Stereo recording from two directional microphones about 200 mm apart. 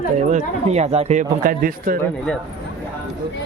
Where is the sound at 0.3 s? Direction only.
35° right (ahead or behind).